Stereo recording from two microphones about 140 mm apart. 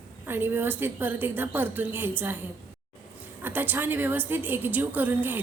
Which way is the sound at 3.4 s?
15° right (ahead or behind).